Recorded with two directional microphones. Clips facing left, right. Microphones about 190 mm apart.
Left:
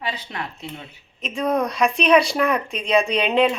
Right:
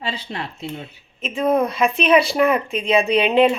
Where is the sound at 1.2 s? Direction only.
5° right (ahead or behind).